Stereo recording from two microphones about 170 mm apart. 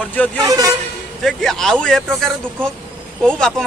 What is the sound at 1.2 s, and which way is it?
Speech, 5° left (ahead or behind).